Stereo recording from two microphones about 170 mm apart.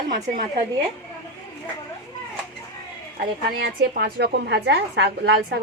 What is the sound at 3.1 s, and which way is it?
A woman's voice, 65° right (ahead or behind).